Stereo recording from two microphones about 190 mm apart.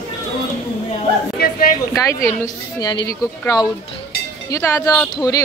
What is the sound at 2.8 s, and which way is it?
Speech, 20° left (ahead or behind).